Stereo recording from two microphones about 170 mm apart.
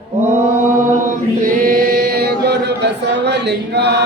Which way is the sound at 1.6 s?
60° right (ahead or behind).